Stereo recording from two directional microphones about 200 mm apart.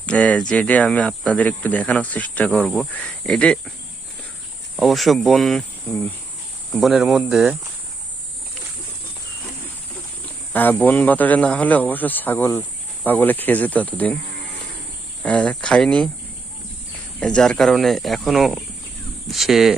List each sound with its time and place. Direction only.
0.0 s speech: 5° left (ahead or behind)
4.8 s speech: centre (ahead or behind)
10.5 s speech: 10° left (ahead or behind)
15.2 s speech: 5° left (ahead or behind)
17.2 s speech: 5° left (ahead or behind)